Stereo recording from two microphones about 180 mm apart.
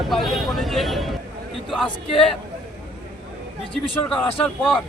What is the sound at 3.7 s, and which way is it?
Speech, 5° left (ahead or behind).